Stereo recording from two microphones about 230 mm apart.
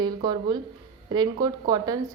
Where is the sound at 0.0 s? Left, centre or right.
Centre.